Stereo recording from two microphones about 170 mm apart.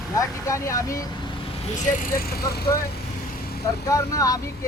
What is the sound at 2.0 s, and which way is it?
Speech, 60° left (ahead or behind).